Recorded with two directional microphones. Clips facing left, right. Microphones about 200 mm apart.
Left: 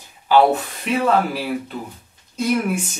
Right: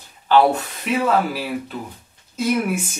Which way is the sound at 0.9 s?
5° right (ahead or behind).